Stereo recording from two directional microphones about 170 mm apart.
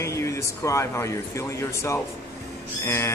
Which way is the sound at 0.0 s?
15° left (ahead or behind).